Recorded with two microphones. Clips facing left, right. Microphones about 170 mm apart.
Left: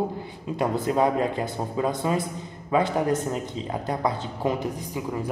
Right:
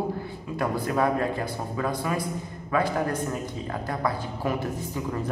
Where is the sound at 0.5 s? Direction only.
20° left (ahead or behind).